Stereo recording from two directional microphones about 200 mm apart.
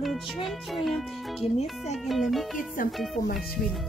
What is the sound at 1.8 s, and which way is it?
Music, centre (ahead or behind).